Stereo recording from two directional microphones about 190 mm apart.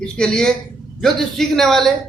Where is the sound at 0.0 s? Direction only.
5° left (ahead or behind).